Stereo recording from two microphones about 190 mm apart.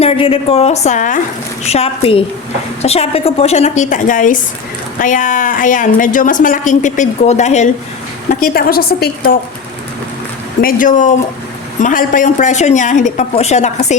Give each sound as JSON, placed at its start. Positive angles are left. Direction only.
{"t": 0.0, "sound": "a woman's voice", "side_deg": 30}
{"t": 10.6, "sound": "a woman's voice", "side_deg": 45}